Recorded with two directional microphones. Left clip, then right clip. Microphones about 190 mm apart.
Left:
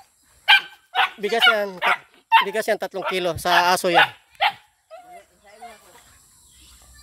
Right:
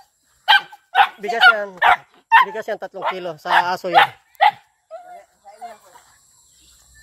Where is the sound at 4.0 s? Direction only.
55° right (ahead or behind).